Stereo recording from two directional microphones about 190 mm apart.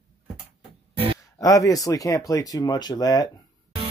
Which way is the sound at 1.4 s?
20° left (ahead or behind).